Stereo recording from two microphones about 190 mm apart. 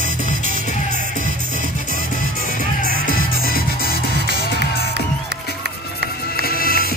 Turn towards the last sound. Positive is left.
turn(degrees=50)  # may be behind; listen again after turning